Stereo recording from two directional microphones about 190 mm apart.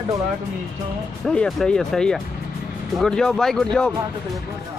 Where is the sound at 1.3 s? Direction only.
Centre (ahead or behind).